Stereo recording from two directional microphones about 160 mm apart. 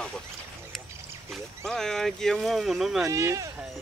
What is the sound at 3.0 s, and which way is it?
Speech, 20° right (ahead or behind).